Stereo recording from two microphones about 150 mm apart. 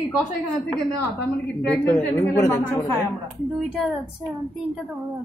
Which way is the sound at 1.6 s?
5° left (ahead or behind).